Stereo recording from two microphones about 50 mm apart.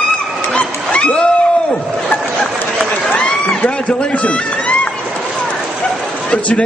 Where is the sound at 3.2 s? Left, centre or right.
Centre.